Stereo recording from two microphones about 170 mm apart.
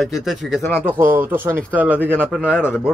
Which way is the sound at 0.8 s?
15° right (ahead or behind).